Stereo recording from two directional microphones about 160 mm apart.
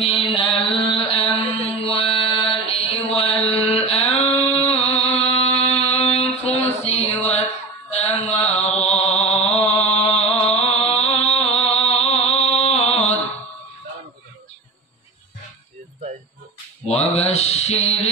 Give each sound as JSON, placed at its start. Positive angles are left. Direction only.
{"t": 0.0, "sound": "mantra", "side_deg": 35}
{"t": 10.9, "sound": "music", "side_deg": 40}
{"t": 16.9, "sound": "mantra", "side_deg": 40}